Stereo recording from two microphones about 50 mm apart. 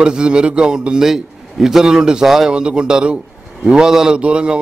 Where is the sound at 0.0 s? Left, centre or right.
Centre.